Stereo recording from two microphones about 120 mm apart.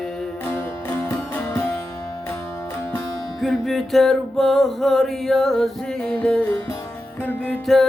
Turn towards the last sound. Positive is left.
turn(degrees=15)  # may be behind; listen again after turning